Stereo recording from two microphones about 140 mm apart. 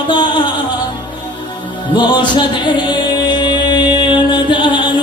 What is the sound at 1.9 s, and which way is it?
Music, 35° left (ahead or behind).